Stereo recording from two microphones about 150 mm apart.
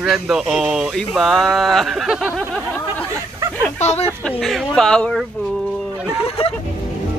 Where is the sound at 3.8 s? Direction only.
45° left (ahead or behind).